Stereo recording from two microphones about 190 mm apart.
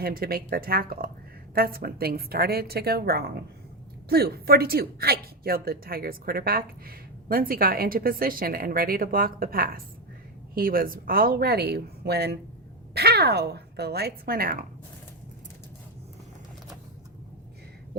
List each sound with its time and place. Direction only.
0.0 s a woman's voice: 50° right (ahead or behind)